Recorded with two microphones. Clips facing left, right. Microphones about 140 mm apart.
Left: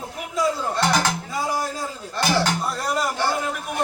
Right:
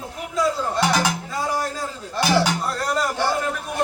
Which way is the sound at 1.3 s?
10° left (ahead or behind).